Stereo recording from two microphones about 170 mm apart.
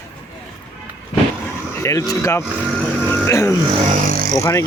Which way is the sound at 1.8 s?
20° left (ahead or behind).